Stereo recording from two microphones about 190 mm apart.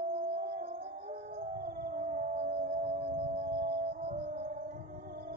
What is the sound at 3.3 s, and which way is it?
Music, 55° right (ahead or behind).